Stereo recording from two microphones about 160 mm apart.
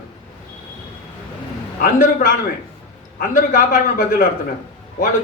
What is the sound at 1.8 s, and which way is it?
A man's voice, 60° left (ahead or behind).